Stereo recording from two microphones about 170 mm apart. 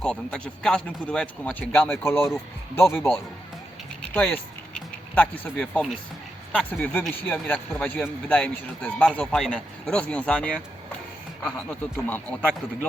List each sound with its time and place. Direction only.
0.0 s speech: 5° left (ahead or behind)
4.1 s speech: 5° left (ahead or behind)